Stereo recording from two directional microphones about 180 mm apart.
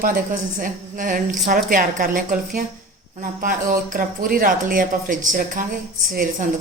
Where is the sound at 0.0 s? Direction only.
50° right (ahead or behind).